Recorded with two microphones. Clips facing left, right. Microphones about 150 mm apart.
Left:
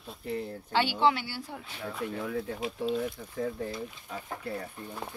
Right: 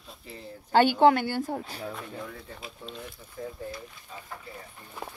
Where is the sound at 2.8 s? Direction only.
90° left.